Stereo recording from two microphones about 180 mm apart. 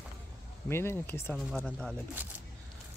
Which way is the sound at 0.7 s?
15° left (ahead or behind).